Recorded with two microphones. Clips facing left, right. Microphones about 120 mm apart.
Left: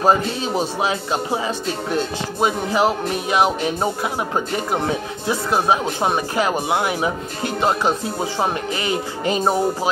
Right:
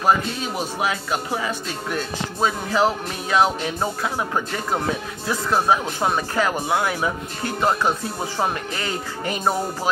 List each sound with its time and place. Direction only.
0.0 s speech: 30° left (ahead or behind)